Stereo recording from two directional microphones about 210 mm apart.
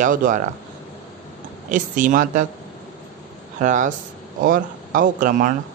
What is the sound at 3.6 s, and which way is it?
Speech, 35° right (ahead or behind).